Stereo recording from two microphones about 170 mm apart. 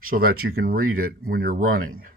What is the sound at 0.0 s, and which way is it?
Speech, 60° right (ahead or behind).